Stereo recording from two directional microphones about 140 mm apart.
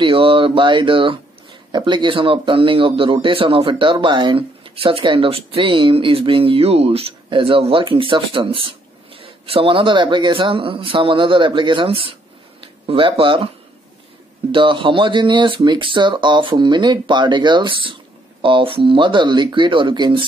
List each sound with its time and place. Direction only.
0.0 s speech: 40° right (ahead or behind)
14.5 s speech: 35° right (ahead or behind)